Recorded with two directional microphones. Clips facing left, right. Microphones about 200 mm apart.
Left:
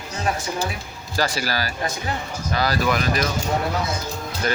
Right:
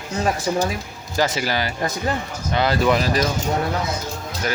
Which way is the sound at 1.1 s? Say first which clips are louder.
Right 3 dB; 20° right (ahead or behind).